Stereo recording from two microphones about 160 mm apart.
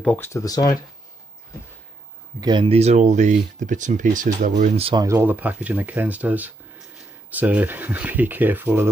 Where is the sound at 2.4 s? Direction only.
30° right (ahead or behind); by 4.8 s 50° right (ahead or behind).